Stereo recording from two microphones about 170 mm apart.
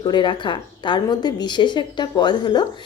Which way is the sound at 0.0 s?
25° left (ahead or behind).